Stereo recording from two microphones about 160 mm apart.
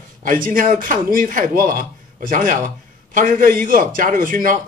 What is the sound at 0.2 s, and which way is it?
A man's voice, 60° right (ahead or behind).